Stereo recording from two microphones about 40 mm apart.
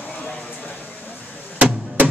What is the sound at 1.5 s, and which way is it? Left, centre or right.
Music, right.